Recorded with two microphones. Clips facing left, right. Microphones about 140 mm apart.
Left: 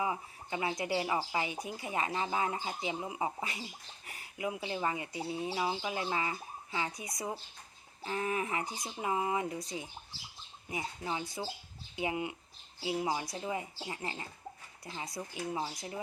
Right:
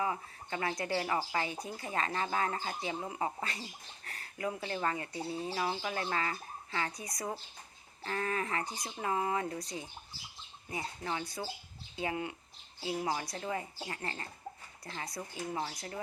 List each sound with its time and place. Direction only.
0.0 s speech: 15° left (ahead or behind)
10.7 s speech: 15° left (ahead or behind)